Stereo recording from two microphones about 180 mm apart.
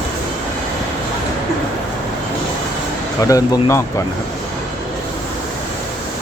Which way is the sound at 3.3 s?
15° left (ahead or behind).